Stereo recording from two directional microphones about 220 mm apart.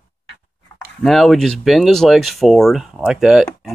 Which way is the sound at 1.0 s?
Centre (ahead or behind).